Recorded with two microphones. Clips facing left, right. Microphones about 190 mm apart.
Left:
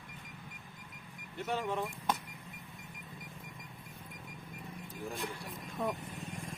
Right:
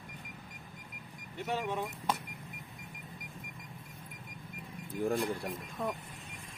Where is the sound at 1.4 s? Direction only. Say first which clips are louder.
Even; centre (ahead or behind).